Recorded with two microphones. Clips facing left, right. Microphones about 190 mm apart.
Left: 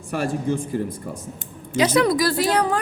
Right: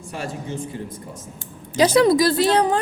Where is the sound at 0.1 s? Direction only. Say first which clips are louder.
Left 7 dB; 55° left (ahead or behind).